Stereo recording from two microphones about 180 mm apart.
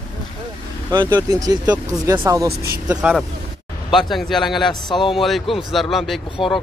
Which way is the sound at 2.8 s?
5° right (ahead or behind).